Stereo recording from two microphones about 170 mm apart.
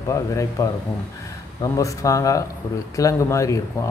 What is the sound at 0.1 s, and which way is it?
A man's voice, 20° left (ahead or behind).